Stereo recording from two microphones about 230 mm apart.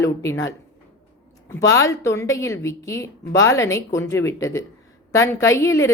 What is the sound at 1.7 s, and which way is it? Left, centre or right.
A woman's voice, centre.